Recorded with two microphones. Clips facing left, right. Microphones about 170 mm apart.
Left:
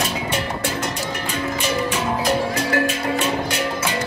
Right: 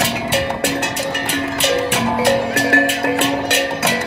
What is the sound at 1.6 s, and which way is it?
Music, 70° right (ahead or behind).